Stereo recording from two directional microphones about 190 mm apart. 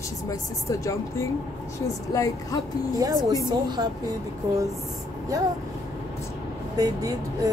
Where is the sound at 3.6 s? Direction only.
20° right (ahead or behind).